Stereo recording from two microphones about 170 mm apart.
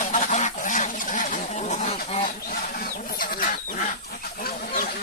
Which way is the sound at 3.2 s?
55° left (ahead or behind).